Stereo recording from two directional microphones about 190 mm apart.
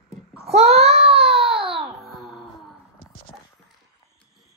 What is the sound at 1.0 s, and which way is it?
Baby cry, 30° right (ahead or behind).